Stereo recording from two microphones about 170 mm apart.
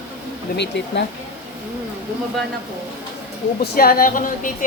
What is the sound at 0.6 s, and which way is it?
Speech, 90° left.